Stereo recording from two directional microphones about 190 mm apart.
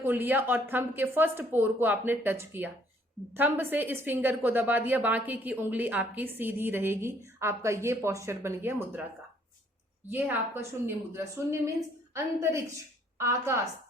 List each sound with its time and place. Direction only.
0.0 s a woman's voice: 10° right (ahead or behind)
10.1 s a woman's voice: 10° right (ahead or behind)